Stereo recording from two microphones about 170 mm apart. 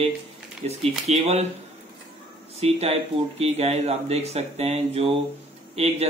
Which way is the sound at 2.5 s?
40° right (ahead or behind).